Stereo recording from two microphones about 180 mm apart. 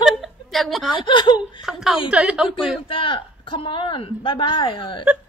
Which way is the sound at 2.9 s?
30° left (ahead or behind).